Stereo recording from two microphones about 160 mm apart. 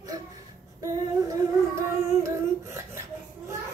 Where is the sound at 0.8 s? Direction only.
20° right (ahead or behind).